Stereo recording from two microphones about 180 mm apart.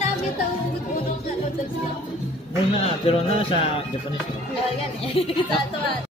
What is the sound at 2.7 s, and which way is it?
Speech, 30° left (ahead or behind).